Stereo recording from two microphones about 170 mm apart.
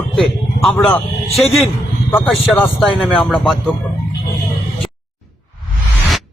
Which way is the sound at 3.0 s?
5° left (ahead or behind).